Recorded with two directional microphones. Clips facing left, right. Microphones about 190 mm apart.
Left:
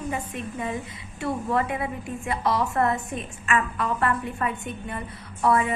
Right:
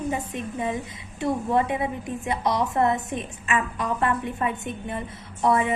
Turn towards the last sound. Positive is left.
turn(degrees=-20)  # may be behind; listen again after turning